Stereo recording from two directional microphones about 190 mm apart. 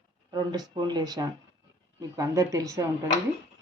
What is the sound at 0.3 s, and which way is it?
A woman's voice, 20° right (ahead or behind).